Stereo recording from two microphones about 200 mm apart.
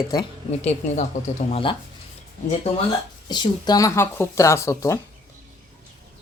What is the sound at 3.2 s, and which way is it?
Speech, 20° left (ahead or behind).